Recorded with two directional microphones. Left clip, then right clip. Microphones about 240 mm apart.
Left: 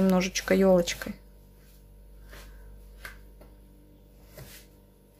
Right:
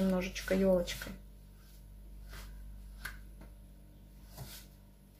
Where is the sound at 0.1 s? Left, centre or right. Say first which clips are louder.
Left 9 dB; left.